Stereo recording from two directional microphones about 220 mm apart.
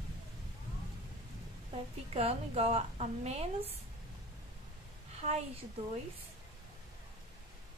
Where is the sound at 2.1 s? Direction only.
30° right (ahead or behind).